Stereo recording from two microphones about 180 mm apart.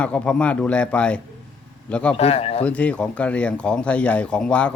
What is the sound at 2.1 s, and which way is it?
Speech, 35° left (ahead or behind).